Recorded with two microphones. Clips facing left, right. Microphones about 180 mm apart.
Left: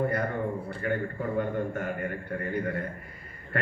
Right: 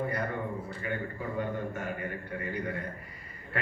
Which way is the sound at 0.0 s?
50° left (ahead or behind).